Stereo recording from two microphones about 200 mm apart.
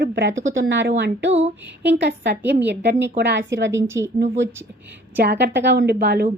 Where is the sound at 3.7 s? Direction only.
15° right (ahead or behind).